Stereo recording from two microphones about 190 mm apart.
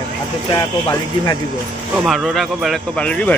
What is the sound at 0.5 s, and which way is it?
Speech, 15° left (ahead or behind).